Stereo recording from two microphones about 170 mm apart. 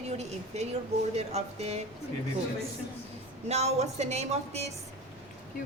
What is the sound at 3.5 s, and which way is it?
A woman's voice, 40° right (ahead or behind).